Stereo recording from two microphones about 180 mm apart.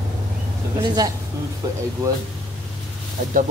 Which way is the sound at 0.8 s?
25° right (ahead or behind).